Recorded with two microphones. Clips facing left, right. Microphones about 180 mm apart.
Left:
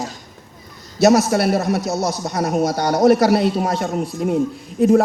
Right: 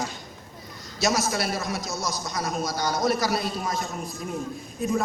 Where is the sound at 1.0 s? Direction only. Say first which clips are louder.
Left 11 dB; 65° left (ahead or behind).